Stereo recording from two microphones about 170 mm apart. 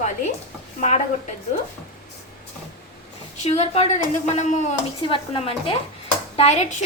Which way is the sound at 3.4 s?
40° left (ahead or behind).